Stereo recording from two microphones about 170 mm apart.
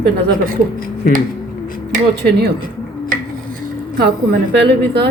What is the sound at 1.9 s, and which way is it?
Speech, 70° right (ahead or behind).